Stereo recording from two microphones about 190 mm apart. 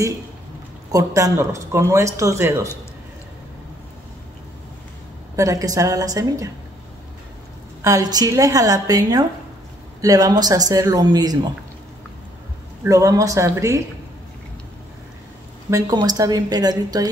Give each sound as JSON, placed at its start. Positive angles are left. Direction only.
{"t": 0.9, "sound": "speech", "side_deg": -15}
{"t": 5.3, "sound": "speech", "side_deg": -15}
{"t": 7.8, "sound": "speech", "side_deg": -20}
{"t": 12.8, "sound": "speech", "side_deg": -15}
{"t": 15.7, "sound": "speech", "side_deg": -20}